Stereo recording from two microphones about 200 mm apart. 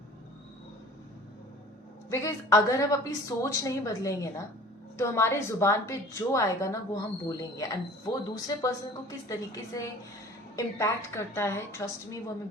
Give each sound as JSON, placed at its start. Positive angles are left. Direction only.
{"t": 2.0, "sound": "a woman's voice", "side_deg": 15}